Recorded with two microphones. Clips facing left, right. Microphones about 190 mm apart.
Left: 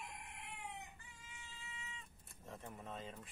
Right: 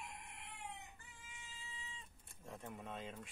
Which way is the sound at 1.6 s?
35° right (ahead or behind).